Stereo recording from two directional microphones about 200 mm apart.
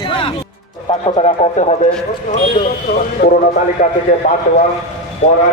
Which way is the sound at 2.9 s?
50° left (ahead or behind).